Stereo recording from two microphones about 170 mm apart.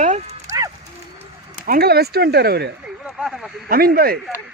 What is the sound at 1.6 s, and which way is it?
Speech, 65° right (ahead or behind).